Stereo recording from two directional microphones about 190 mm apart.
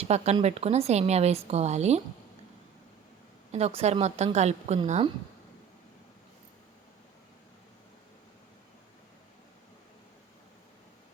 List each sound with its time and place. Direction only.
0.0 s a woman's voice: 35° right (ahead or behind)
3.5 s a woman's voice: 35° right (ahead or behind)